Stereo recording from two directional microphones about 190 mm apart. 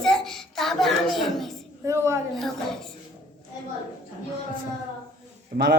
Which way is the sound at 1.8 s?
15° right (ahead or behind).